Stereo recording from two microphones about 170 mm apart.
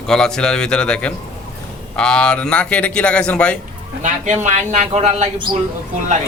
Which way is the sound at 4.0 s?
45° right (ahead or behind).